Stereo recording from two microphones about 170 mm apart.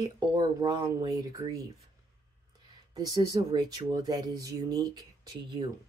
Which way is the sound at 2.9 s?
20° right (ahead or behind).